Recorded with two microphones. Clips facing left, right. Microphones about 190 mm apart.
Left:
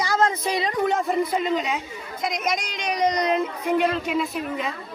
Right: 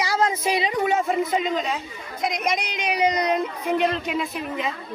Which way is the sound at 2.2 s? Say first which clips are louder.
Right 1 dB; centre (ahead or behind).